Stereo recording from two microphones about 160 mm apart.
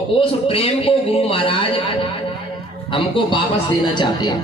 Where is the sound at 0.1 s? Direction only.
35° left (ahead or behind).